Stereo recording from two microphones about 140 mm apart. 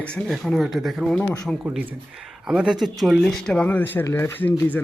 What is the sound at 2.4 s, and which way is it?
Speech, 5° right (ahead or behind).